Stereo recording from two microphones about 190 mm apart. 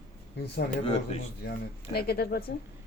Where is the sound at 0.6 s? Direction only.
40° left (ahead or behind).